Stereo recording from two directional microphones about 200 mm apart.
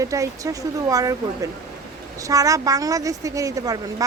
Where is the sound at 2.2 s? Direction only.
15° right (ahead or behind).